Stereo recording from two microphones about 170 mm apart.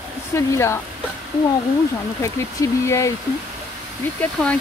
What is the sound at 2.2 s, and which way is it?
Speech, 15° left (ahead or behind).